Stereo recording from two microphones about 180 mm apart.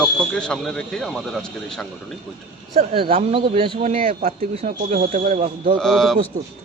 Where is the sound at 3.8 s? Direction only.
45° right (ahead or behind).